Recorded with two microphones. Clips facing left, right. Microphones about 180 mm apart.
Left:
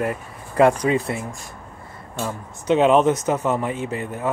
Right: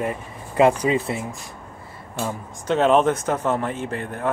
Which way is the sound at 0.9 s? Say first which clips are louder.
Left 1 dB; 30° right (ahead or behind).